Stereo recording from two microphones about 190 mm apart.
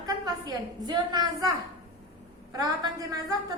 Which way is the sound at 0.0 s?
20° right (ahead or behind).